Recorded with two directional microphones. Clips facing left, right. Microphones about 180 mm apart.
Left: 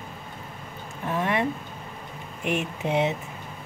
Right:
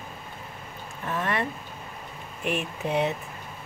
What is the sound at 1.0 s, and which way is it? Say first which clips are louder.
Speech: left 3 dB; 15° left (ahead or behind).